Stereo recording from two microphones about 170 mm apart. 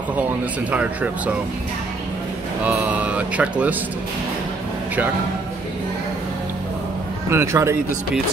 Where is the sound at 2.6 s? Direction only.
10° right (ahead or behind).